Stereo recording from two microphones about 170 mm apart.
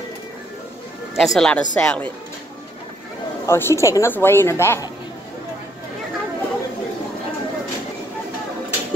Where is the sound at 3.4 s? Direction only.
15° left (ahead or behind).